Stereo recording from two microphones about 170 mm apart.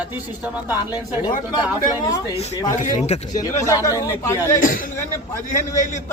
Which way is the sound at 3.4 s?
20° left (ahead or behind).